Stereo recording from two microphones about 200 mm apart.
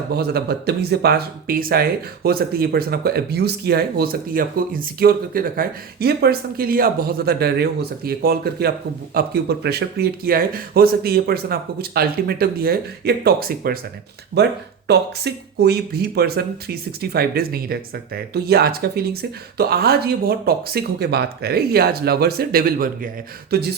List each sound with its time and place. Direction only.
0.1 s speech: 50° right (ahead or behind)